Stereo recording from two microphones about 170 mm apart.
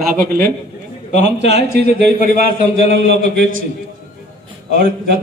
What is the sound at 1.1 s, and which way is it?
Speech, 85° right.